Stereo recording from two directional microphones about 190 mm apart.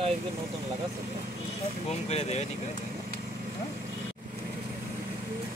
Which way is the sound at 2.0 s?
35° left (ahead or behind).